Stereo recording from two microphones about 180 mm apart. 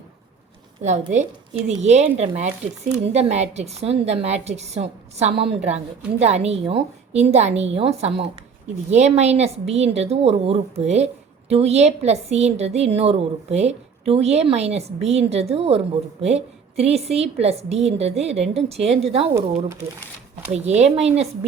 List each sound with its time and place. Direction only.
0.8 s speech: 40° right (ahead or behind)
19.3 s speech: 15° right (ahead or behind)
20.5 s speech: 35° right (ahead or behind)